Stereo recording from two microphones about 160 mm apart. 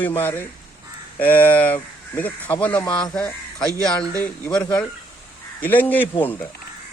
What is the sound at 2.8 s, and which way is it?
Speech, 30° left (ahead or behind).